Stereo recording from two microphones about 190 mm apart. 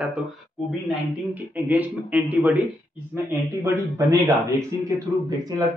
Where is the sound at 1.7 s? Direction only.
10° right (ahead or behind).